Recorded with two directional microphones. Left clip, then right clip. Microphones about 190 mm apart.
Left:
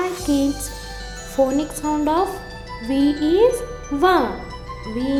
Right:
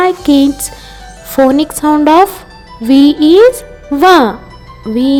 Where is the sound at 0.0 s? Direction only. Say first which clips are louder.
Right 12 dB; 50° right (ahead or behind).